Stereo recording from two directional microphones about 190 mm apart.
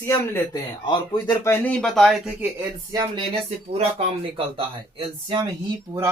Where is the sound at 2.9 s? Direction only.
25° right (ahead or behind).